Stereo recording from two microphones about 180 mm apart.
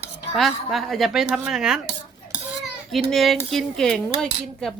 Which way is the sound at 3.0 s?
Centre (ahead or behind).